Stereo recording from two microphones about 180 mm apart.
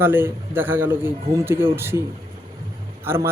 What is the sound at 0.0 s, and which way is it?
A man's voice, 10° right (ahead or behind).